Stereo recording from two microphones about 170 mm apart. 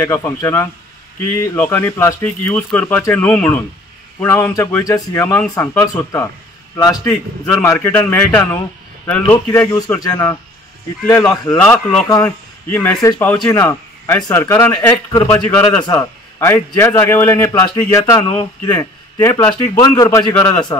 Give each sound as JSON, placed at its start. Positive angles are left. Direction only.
{"t": 0.0, "sound": "a man's voice", "side_deg": 15}
{"t": 9.9, "sound": "a man's voice", "side_deg": 20}